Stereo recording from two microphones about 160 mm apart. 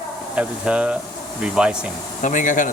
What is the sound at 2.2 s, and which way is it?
Speech, 55° left (ahead or behind).